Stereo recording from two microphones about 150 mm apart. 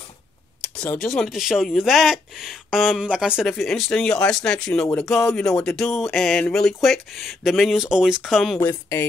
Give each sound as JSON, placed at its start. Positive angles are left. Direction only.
{"t": 0.6, "sound": "speech", "side_deg": 10}
{"t": 8.5, "sound": "speech", "side_deg": 15}